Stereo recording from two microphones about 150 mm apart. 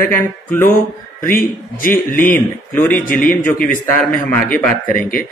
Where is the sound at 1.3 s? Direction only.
70° left (ahead or behind).